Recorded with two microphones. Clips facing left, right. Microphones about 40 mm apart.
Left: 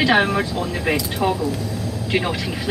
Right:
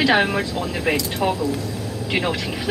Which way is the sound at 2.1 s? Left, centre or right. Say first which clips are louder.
Left 1 dB; centre.